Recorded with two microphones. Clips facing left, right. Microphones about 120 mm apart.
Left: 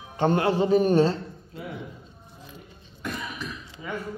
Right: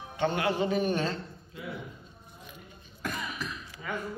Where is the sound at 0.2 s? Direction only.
35° left (ahead or behind).